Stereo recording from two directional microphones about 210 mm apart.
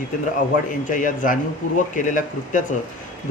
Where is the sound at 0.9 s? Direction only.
40° left (ahead or behind).